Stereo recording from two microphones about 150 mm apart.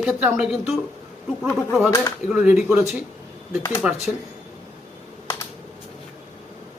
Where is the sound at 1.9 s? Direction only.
25° left (ahead or behind).